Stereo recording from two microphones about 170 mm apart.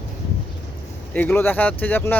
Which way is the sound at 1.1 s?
10° left (ahead or behind).